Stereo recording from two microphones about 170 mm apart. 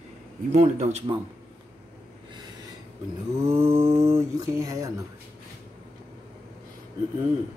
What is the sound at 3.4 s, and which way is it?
Speech, 15° right (ahead or behind).